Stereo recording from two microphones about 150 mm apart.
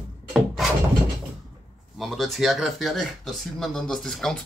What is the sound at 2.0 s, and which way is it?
Speech, centre (ahead or behind).